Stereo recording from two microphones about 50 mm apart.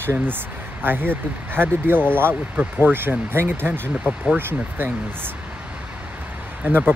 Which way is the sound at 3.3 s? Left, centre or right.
Right.